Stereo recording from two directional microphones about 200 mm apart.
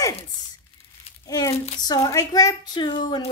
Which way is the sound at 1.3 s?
15° left (ahead or behind).